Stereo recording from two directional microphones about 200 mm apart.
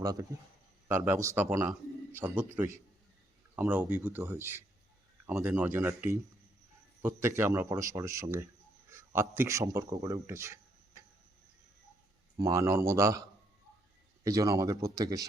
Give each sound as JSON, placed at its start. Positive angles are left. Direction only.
{"t": 0.0, "sound": "speech", "side_deg": -15}
{"t": 12.4, "sound": "speech", "side_deg": -15}
{"t": 14.3, "sound": "speech", "side_deg": -15}